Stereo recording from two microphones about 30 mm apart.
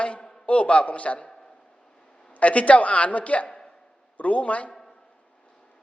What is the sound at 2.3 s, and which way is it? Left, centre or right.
A woman's voice, left.